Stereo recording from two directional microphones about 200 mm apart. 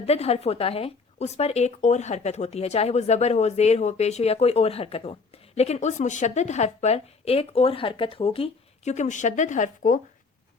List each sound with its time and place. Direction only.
0.0 s speech: 30° left (ahead or behind)